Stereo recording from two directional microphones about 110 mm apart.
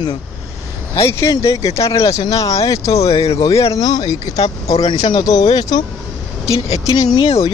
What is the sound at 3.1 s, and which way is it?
Speech, 60° left (ahead or behind).